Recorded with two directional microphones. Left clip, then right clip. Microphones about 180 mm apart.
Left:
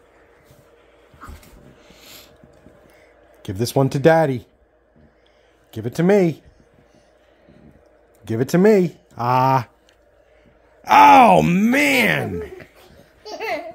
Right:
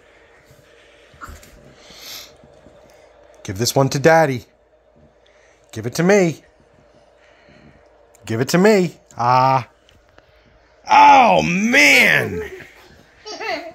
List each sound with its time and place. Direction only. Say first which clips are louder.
1.8 s a sound: right 9 dB; 10° left (ahead or behind)
3.4 s speech: right 2 dB; 15° left (ahead or behind)
5.7 s speech: right 2 dB; 10° left (ahead or behind)
8.3 s speech: right 1 dB; 10° left (ahead or behind); by 9.7 s 30° left (ahead or behind)
10.8 s speech: even; 70° left (ahead or behind); by 11.8 s 45° left (ahead or behind)
11.8 s speech: right 7 dB; 25° left (ahead or behind)